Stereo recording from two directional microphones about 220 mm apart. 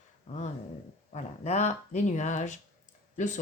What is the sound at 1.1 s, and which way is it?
Speech, 30° left (ahead or behind).